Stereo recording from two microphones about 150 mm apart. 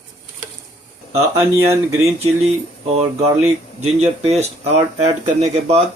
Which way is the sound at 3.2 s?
45° right (ahead or behind).